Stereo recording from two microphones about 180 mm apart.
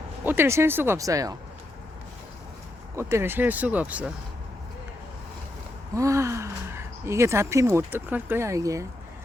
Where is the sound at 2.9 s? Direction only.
15° right (ahead or behind).